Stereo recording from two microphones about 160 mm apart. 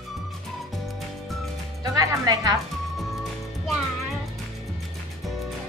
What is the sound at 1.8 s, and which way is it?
Speech, 20° right (ahead or behind).